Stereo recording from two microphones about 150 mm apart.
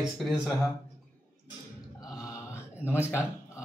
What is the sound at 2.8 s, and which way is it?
Speech, 15° left (ahead or behind).